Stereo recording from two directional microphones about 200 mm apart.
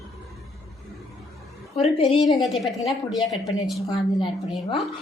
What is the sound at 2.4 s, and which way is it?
Speech, centre (ahead or behind).